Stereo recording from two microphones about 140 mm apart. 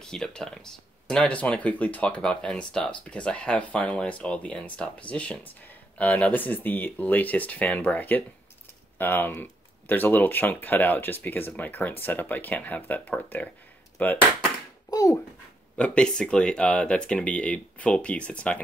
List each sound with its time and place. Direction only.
0.0 s speech: 5° left (ahead or behind)
14.9 s a sound: 25° left (ahead or behind)
15.8 s speech: 5° left (ahead or behind)